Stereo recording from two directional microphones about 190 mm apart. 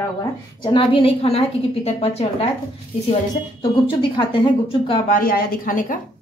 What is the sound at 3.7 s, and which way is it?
A woman's voice, 25° left (ahead or behind).